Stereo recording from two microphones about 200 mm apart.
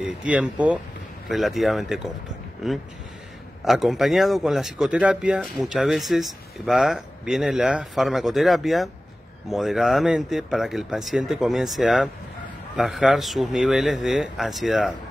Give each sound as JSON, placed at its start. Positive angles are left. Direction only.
{"t": 0.0, "sound": "speech", "side_deg": -5}